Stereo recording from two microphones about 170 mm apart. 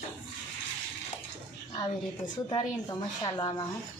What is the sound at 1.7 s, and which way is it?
A woman's voice, 25° left (ahead or behind).